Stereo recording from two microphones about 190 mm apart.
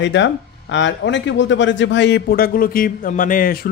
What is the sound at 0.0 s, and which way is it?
Speech, 70° left (ahead or behind).